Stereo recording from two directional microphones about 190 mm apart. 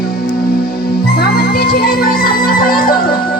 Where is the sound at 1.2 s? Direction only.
50° left (ahead or behind).